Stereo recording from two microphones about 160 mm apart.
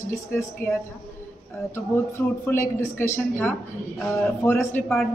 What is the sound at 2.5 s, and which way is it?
Speech, 15° left (ahead or behind).